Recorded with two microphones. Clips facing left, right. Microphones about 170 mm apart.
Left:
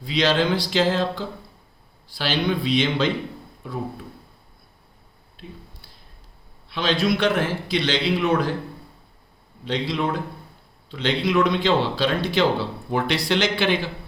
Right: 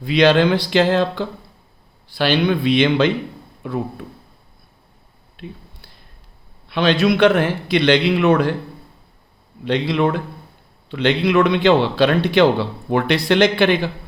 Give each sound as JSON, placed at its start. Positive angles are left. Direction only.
{"t": 0.0, "sound": "a man's voice", "side_deg": -60}
{"t": 5.4, "sound": "a man's voice", "side_deg": -65}
{"t": 6.7, "sound": "a man's voice", "side_deg": -65}
{"t": 9.6, "sound": "a man's voice", "side_deg": -60}